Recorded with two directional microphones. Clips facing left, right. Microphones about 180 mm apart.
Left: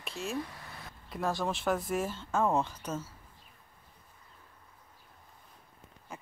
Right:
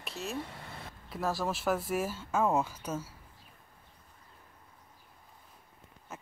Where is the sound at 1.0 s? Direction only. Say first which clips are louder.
Even; centre (ahead or behind).